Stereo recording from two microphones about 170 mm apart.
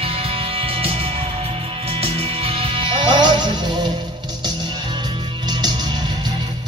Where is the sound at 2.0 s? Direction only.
35° right (ahead or behind).